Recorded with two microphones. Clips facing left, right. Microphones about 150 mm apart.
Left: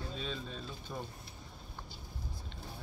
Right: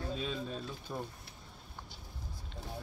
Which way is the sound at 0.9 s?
10° right (ahead or behind).